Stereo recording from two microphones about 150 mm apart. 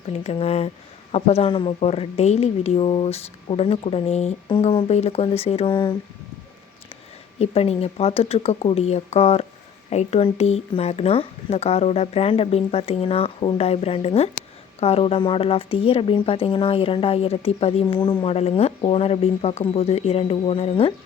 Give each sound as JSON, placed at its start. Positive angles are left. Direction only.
{"t": 0.1, "sound": "speech", "side_deg": 40}
{"t": 7.3, "sound": "speech", "side_deg": 40}